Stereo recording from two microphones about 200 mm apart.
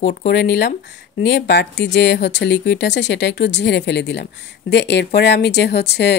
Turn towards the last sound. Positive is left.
turn(degrees=55)  # may be behind; listen again after turning